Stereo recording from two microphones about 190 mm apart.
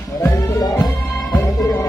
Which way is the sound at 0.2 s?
15° left (ahead or behind).